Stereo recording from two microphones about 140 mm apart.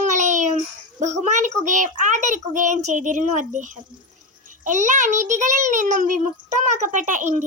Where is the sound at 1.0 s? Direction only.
55° right (ahead or behind).